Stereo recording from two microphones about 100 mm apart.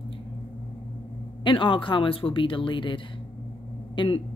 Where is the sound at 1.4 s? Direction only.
55° left (ahead or behind).